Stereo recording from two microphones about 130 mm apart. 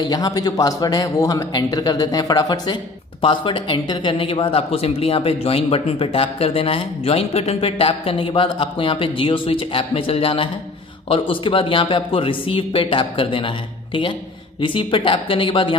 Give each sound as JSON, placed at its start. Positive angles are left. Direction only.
{"t": 0.0, "sound": "a man's voice", "side_deg": 30}
{"t": 14.6, "sound": "speech", "side_deg": 40}